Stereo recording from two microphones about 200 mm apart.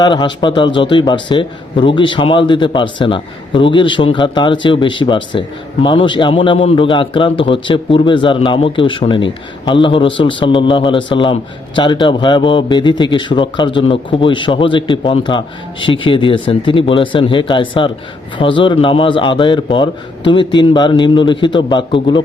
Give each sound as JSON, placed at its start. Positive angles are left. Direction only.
{"t": 0.0, "sound": "a man's voice", "side_deg": 25}